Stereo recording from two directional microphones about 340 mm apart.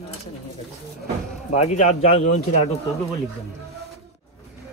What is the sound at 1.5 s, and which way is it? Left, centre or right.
Speech, centre.